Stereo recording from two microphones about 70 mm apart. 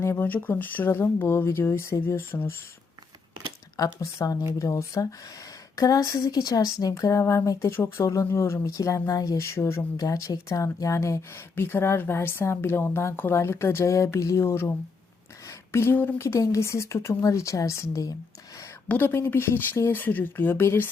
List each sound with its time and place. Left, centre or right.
0.0 s a woman's voice: left
3.8 s speech: left
9.4 s a woman's voice: left
10.0 s speech: left
11.5 s a woman's voice: left
15.4 s a sound: left
16.1 s speech: left
18.9 s speech: left